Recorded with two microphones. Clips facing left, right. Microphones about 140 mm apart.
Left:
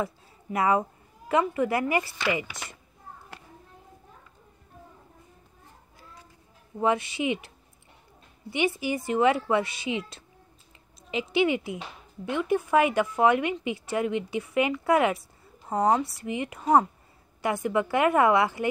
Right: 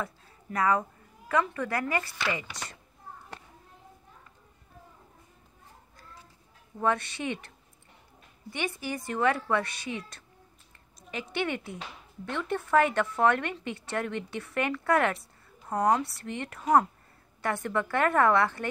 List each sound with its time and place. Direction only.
0.6 s speech: 25° left (ahead or behind)
2.5 s speech: 20° left (ahead or behind)
6.8 s speech: 15° left (ahead or behind)
8.5 s speech: 5° left (ahead or behind)
9.9 s a woman's voice: 85° left
11.3 s speech: 5° left (ahead or behind)
15.8 s speech: centre (ahead or behind)
17.4 s speech: 10° left (ahead or behind)